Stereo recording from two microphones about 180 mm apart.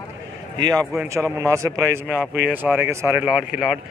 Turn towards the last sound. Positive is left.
turn(degrees=-5)  # may be behind; listen again after turning